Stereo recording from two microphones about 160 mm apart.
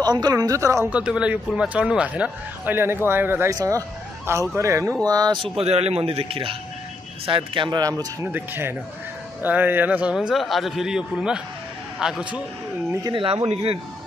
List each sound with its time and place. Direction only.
0.0 s speech: 25° right (ahead or behind)
8.3 s a man's voice: 10° right (ahead or behind)
12.9 s speech: 25° right (ahead or behind)